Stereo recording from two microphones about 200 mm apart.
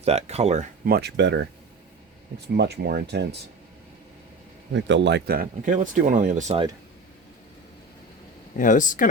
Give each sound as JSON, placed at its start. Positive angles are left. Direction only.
{"t": 0.0, "sound": "speech", "side_deg": -30}
{"t": 0.9, "sound": "speech", "side_deg": -55}
{"t": 2.6, "sound": "speech", "side_deg": -55}
{"t": 4.7, "sound": "speech", "side_deg": -65}
{"t": 8.5, "sound": "speech", "side_deg": 40}